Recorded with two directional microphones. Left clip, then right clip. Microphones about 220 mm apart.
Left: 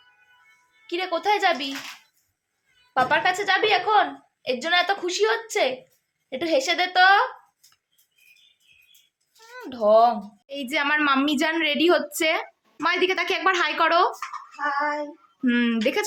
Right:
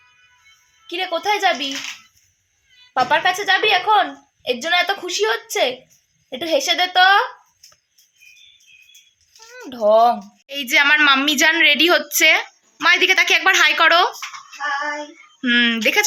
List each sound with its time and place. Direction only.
0.9 s a woman's voice: 25° right (ahead or behind)
2.9 s a woman's voice: 25° right (ahead or behind)
9.6 s speech: 25° right (ahead or behind)
10.4 s speech: 5° left (ahead or behind)
15.4 s speech: 5° left (ahead or behind)